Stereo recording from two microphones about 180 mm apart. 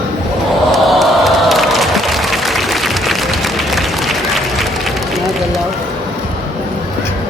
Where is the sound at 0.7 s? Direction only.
Centre (ahead or behind).